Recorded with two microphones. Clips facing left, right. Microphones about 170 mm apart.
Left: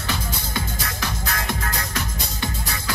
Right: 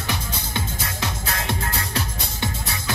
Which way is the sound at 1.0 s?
25° right (ahead or behind).